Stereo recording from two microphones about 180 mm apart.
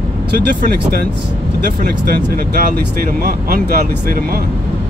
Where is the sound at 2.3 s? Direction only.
55° right (ahead or behind).